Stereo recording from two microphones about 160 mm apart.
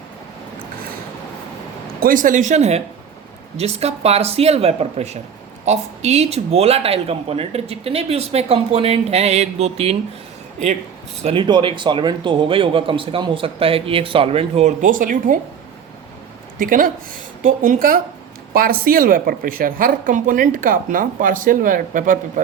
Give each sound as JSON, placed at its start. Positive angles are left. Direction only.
{"t": 2.0, "sound": "speech", "side_deg": -60}
{"t": 11.2, "sound": "speech", "side_deg": -35}
{"t": 14.8, "sound": "a woman's voice", "side_deg": -55}
{"t": 16.6, "sound": "a woman's voice", "side_deg": -60}